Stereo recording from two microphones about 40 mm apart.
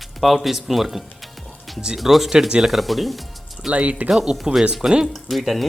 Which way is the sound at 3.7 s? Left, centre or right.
Right.